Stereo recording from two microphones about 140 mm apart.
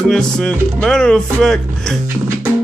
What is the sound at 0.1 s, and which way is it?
Speech, 5° left (ahead or behind).